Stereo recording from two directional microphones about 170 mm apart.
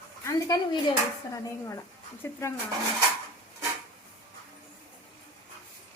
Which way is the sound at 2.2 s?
15° left (ahead or behind).